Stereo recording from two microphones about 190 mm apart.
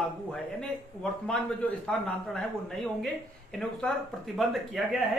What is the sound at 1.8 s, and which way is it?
A man's voice, 5° left (ahead or behind).